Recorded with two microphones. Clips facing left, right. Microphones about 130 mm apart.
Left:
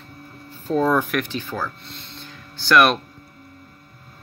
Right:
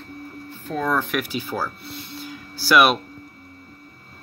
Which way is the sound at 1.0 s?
5° right (ahead or behind).